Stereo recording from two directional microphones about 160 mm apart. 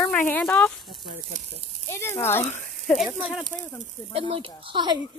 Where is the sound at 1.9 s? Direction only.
15° left (ahead or behind).